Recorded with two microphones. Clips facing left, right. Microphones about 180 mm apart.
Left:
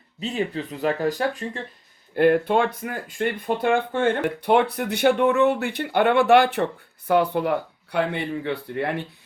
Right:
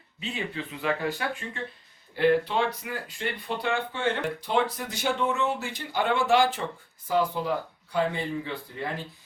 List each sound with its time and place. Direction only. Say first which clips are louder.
0.2 s speech: left 7 dB; 40° left (ahead or behind)
2.1 s speech: left 5 dB; 50° left (ahead or behind)